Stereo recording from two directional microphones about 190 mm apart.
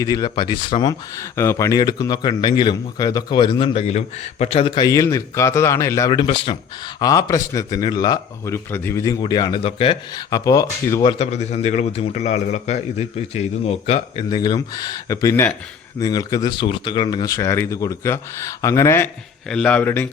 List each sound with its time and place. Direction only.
0.0 s speech: 20° left (ahead or behind)
11.2 s a man's voice: 35° left (ahead or behind); by 19.0 s 15° left (ahead or behind)
19.5 s speech: 5° left (ahead or behind)